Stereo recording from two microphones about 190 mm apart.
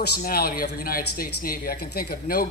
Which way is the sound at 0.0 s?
55° left (ahead or behind).